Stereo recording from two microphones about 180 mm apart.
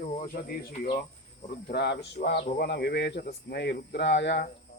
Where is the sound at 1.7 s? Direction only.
65° left (ahead or behind).